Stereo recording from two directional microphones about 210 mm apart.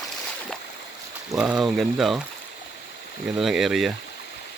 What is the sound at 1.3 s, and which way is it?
Speech, 5° right (ahead or behind).